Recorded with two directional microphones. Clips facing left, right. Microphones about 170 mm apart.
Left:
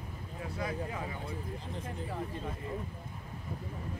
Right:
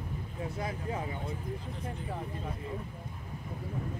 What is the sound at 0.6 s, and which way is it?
Speech, 30° right (ahead or behind).